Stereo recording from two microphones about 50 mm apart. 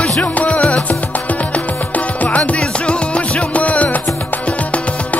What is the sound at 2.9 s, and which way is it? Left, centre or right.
Music, left.